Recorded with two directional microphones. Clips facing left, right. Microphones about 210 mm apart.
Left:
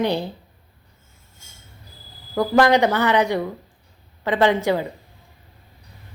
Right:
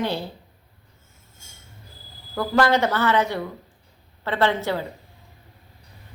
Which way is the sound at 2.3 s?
15° left (ahead or behind).